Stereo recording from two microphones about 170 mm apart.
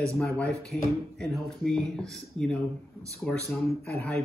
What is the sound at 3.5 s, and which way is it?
Speech, 15° left (ahead or behind).